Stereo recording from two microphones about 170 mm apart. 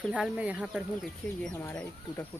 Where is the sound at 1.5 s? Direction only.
15° left (ahead or behind).